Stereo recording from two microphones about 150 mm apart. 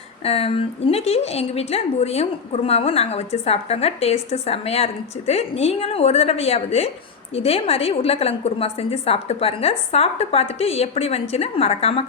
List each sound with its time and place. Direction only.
0.3 s a woman's voice: 40° left (ahead or behind)